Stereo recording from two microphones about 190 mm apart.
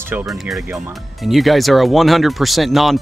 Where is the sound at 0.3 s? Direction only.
5° right (ahead or behind).